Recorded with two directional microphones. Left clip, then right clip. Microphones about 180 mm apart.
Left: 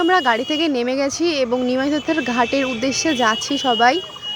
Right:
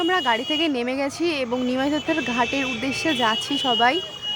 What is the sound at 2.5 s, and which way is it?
Speech, centre (ahead or behind).